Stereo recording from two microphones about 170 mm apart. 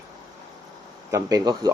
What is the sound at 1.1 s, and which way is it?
Speech, 20° right (ahead or behind).